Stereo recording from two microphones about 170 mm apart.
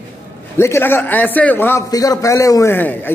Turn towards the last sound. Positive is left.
turn(degrees=10)  # may be behind; listen again after turning